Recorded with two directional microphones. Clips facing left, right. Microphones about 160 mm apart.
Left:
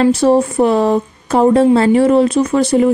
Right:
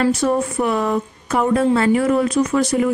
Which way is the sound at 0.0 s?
30° left (ahead or behind).